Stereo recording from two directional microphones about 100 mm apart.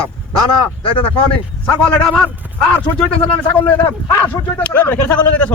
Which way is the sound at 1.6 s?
10° left (ahead or behind).